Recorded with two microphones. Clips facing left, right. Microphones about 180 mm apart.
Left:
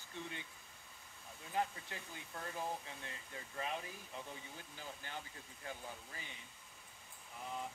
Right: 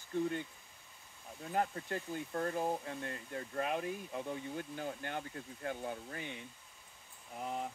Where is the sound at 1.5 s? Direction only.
50° right (ahead or behind).